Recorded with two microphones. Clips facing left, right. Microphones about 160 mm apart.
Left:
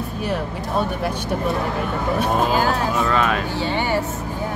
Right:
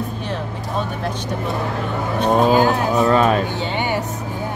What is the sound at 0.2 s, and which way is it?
Speech, 10° left (ahead or behind).